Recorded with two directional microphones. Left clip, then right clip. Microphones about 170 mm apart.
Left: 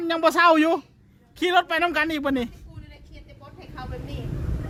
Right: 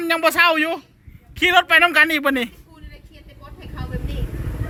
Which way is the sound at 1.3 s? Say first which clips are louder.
Right 7 dB; 25° left (ahead or behind).